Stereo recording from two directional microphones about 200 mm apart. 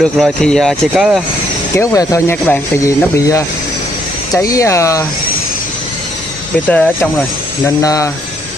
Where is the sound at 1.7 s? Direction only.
15° left (ahead or behind).